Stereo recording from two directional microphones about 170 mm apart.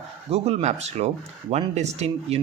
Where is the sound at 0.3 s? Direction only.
35° right (ahead or behind).